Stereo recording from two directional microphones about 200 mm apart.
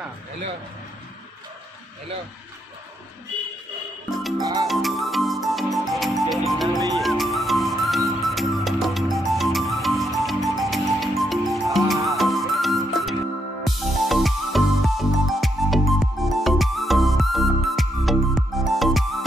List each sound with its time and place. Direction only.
4.1 s music: centre (ahead or behind)
4.4 s music: 15° right (ahead or behind)
4.6 s music: centre (ahead or behind)